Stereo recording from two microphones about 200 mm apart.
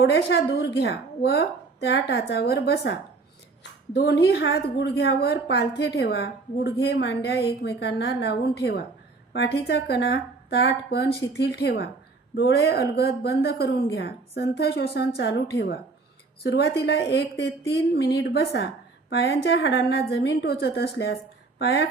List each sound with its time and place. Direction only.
0.0 s a woman's voice: 65° left (ahead or behind)